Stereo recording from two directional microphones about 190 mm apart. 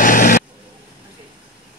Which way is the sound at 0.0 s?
45° left (ahead or behind).